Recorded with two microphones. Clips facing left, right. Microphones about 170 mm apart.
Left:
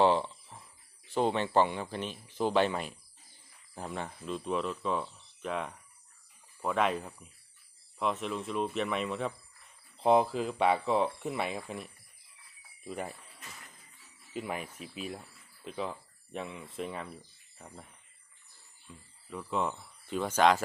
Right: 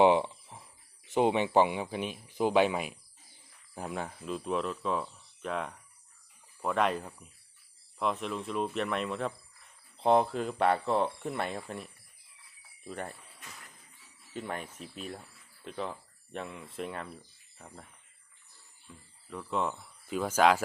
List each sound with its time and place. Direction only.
0.0 s a sound: 15° right (ahead or behind)
1.0 s speech: 15° right (ahead or behind); by 17.8 s centre (ahead or behind)
18.9 s speech: 5° left (ahead or behind)